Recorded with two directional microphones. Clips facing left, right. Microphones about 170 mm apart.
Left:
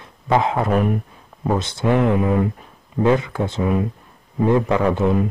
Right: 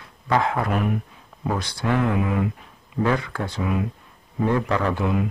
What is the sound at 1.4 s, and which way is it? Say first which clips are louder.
Speech: left 5 dB; 25° left (ahead or behind).